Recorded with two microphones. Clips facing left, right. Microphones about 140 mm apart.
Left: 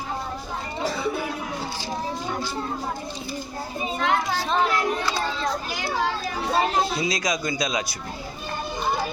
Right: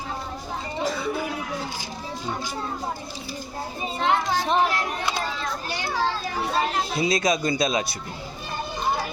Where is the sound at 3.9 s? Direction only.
30° right (ahead or behind).